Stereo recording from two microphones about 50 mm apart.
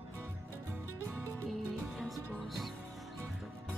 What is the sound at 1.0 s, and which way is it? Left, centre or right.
Music, right.